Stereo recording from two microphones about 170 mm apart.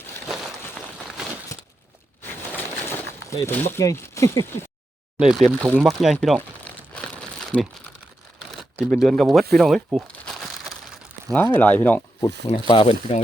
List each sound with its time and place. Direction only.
0.3 s a sound: 5° right (ahead or behind)
2.2 s bird: 10° left (ahead or behind)
5.2 s speech: 5° right (ahead or behind)
6.9 s crumpling: 5° left (ahead or behind)
11.4 s speech: 10° left (ahead or behind)
12.5 s speech: 30° left (ahead or behind)